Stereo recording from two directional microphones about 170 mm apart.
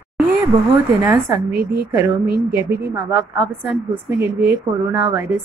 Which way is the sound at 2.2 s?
65° right (ahead or behind).